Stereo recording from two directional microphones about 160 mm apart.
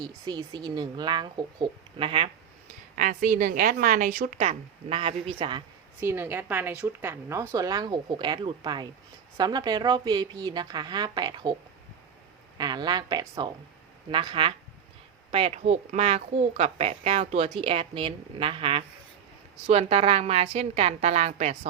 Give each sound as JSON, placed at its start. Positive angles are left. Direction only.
{"t": 0.0, "sound": "speech", "side_deg": -25}
{"t": 3.0, "sound": "a woman's voice", "side_deg": -55}
{"t": 6.0, "sound": "a woman's voice", "side_deg": -15}
{"t": 12.5, "sound": "a woman's voice", "side_deg": -25}